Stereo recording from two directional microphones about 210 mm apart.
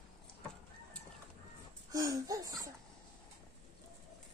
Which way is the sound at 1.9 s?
15° right (ahead or behind).